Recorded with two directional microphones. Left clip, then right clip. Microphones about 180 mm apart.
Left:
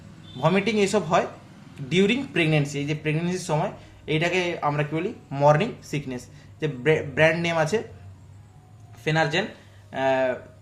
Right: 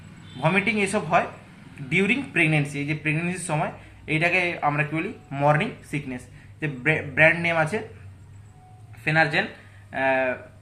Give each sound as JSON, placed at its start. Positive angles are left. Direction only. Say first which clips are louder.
{"t": 0.3, "sound": "a man's voice", "louder": "even", "side_deg": 45}
{"t": 6.6, "sound": "a man's voice", "louder": "left 2 dB", "side_deg": 50}
{"t": 9.0, "sound": "speech", "louder": "right 2 dB", "side_deg": 35}